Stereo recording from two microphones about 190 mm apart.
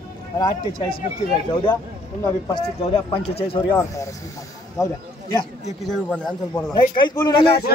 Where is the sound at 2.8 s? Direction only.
30° left (ahead or behind).